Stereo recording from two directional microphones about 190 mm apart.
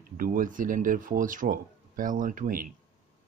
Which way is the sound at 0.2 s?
45° right (ahead or behind).